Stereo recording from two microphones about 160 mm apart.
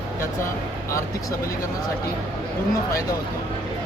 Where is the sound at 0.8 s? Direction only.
20° left (ahead or behind).